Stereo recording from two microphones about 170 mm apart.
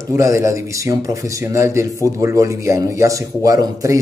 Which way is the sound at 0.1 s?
15° right (ahead or behind).